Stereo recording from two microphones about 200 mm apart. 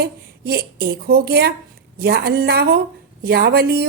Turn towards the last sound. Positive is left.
turn(degrees=-50)  # may be behind; listen again after turning